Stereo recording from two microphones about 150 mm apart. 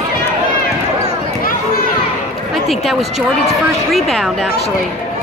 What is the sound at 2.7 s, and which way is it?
Speech, centre (ahead or behind).